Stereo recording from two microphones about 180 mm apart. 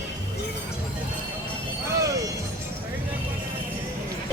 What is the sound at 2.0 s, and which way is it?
Music, 20° right (ahead or behind).